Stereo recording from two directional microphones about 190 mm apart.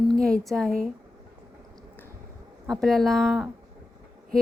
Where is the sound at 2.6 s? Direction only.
Centre (ahead or behind).